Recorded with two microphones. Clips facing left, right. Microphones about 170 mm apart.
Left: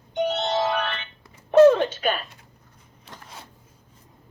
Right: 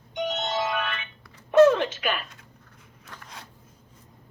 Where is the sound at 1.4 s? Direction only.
35° left (ahead or behind).